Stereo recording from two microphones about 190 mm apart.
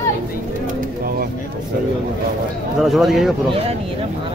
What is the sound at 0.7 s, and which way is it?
Bird, 50° right (ahead or behind).